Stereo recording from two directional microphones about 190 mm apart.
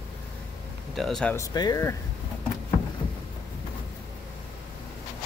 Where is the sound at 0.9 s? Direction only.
Centre (ahead or behind).